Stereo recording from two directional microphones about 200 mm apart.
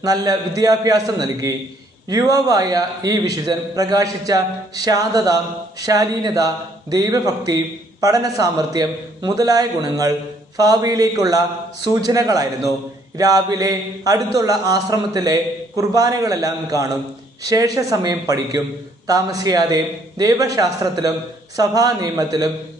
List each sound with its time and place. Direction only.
0.0 s a man's voice: 20° right (ahead or behind)